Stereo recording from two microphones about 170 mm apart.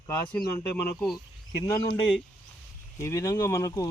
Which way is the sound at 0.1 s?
10° left (ahead or behind).